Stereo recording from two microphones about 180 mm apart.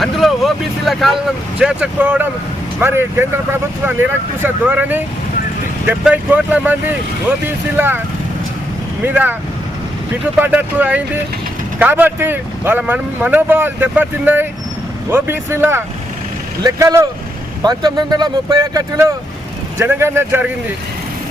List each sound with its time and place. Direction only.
0.0 s speech: centre (ahead or behind)
9.0 s speech: 10° right (ahead or behind)
10.4 s speech: 10° right (ahead or behind)